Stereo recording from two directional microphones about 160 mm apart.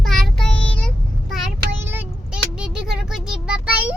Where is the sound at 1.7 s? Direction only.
15° right (ahead or behind).